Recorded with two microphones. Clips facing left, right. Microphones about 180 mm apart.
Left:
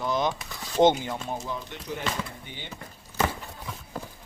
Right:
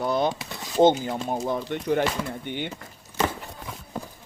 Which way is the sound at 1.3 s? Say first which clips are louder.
Right 7 dB; 55° right (ahead or behind).